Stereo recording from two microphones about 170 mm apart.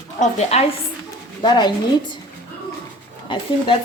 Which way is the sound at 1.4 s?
25° left (ahead or behind).